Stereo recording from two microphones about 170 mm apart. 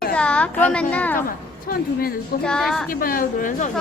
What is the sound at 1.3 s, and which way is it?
Speech, 60° left (ahead or behind).